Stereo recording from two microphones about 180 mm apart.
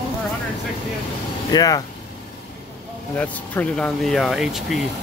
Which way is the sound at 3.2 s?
10° left (ahead or behind).